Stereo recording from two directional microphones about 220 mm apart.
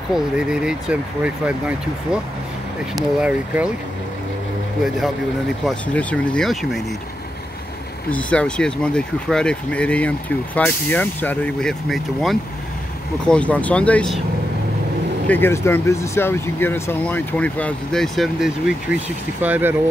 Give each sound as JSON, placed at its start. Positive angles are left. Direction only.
{"t": 0.1, "sound": "speech", "side_deg": -5}
{"t": 3.0, "sound": "speech", "side_deg": -5}
{"t": 5.7, "sound": "speech", "side_deg": 5}
{"t": 8.1, "sound": "speech", "side_deg": 5}
{"t": 15.2, "sound": "speech", "side_deg": 10}